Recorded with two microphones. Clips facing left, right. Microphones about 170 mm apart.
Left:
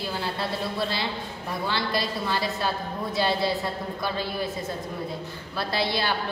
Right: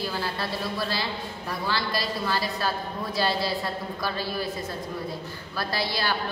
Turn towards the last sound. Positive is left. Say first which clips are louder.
# left 2 dB
turn(degrees=25)  # may be behind; listen again after turning